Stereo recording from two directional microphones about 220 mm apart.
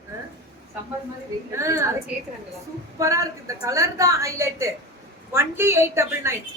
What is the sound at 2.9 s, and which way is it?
A woman's voice, 15° right (ahead or behind).